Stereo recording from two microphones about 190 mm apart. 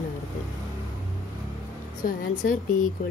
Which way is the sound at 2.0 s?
45° left (ahead or behind).